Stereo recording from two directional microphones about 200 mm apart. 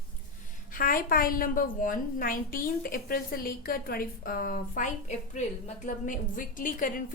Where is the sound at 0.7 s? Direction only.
45° left (ahead or behind).